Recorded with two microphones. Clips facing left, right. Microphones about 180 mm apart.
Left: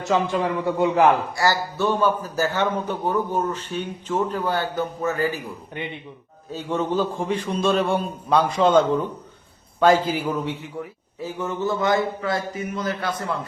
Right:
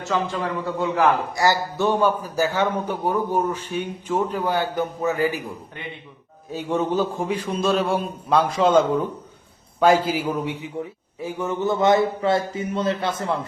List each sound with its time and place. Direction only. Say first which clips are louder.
0.0 s a man's voice: left 3 dB; 15° left (ahead or behind)
1.4 s a man's voice: right 1 dB; 15° right (ahead or behind)
6.5 s a man's voice: right 1 dB; 10° right (ahead or behind)